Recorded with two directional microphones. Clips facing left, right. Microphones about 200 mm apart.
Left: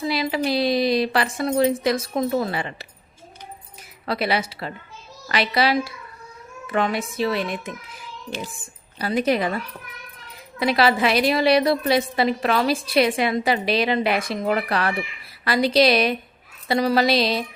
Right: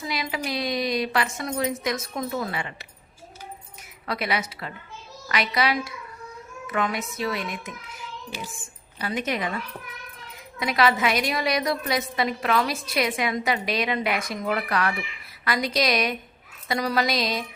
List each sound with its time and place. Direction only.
0.0 s a woman's voice: 30° left (ahead or behind)
4.0 s a woman's voice: 30° left (ahead or behind)
7.2 s music: 30° left (ahead or behind)
9.0 s a woman's voice: 35° left (ahead or behind)
10.6 s a woman's voice: 30° left (ahead or behind)
16.6 s music: 30° left (ahead or behind)